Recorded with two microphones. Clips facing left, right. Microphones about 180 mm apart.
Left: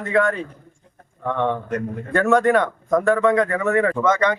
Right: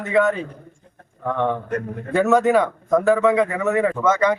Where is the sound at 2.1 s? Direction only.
5° right (ahead or behind).